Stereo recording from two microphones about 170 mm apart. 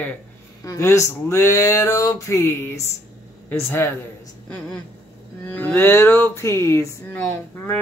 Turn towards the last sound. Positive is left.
turn(degrees=10)  # may be behind; listen again after turning